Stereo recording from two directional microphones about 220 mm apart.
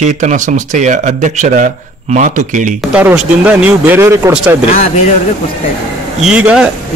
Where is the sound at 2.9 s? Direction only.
5° right (ahead or behind).